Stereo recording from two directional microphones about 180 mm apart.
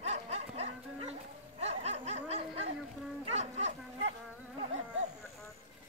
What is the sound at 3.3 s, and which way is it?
Livestock, 40° right (ahead or behind).